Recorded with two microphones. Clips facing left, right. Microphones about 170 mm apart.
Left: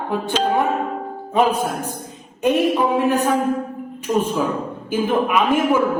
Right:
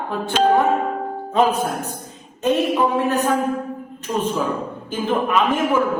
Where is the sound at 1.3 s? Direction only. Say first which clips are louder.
Even; 10° left (ahead or behind).